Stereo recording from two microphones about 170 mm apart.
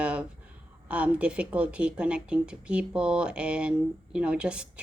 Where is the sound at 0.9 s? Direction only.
10° right (ahead or behind).